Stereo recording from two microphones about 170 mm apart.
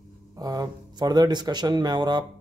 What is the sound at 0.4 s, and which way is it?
Speech, 20° right (ahead or behind).